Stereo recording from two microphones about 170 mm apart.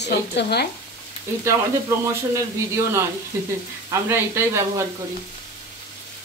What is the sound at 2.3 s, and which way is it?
Speech, 15° right (ahead or behind).